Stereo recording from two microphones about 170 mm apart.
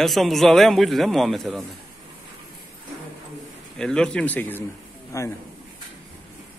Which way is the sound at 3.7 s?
5° left (ahead or behind).